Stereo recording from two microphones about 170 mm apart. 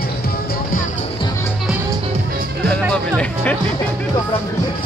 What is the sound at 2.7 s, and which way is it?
Music, 5° left (ahead or behind).